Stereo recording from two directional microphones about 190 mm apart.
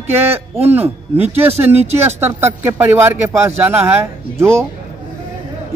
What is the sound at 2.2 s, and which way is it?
Speech, 10° right (ahead or behind).